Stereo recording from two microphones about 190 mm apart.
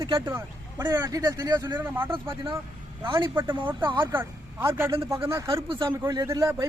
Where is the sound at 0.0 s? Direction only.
15° right (ahead or behind).